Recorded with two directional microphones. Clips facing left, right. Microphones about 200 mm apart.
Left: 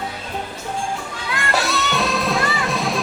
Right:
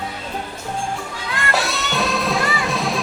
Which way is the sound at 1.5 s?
Centre (ahead or behind).